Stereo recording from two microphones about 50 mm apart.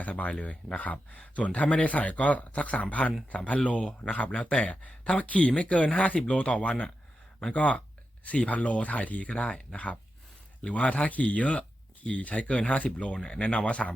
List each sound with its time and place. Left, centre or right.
0.0 s speech: left